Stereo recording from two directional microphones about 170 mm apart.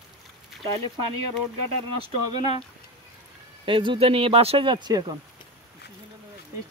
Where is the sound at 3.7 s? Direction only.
30° right (ahead or behind).